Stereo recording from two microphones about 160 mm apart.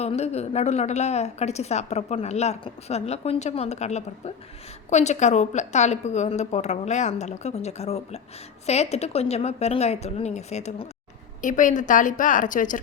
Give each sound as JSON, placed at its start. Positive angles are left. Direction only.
{"t": 0.0, "sound": "a woman's voice", "side_deg": 40}